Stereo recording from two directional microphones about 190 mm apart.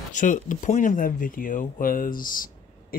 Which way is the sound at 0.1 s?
45° left (ahead or behind).